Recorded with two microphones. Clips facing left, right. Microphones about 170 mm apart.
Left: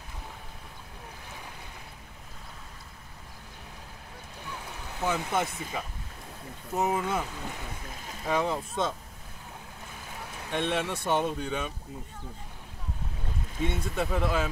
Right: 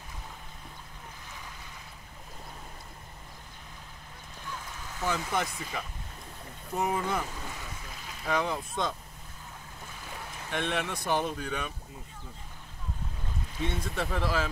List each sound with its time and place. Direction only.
4.9 s speech: 20° left (ahead or behind)
8.3 s speech: 25° left (ahead or behind)
10.5 s speech: 25° left (ahead or behind)
13.7 s speech: 10° left (ahead or behind)
14.2 s speech: 20° left (ahead or behind)